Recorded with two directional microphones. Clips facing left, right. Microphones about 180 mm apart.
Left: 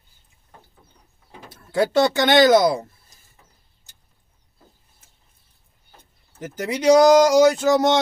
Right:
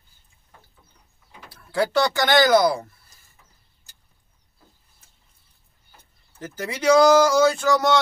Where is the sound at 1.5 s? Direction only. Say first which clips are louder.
Left 2 dB; 25° left (ahead or behind).